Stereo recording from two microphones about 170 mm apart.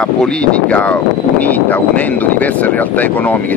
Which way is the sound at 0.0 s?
5° left (ahead or behind).